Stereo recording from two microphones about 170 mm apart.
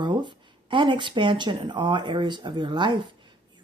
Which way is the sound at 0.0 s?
25° right (ahead or behind).